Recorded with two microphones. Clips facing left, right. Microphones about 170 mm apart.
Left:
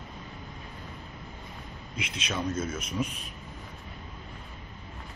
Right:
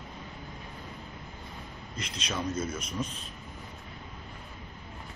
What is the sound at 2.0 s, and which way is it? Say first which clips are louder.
A man's voice: left 2 dB; 5° left (ahead or behind).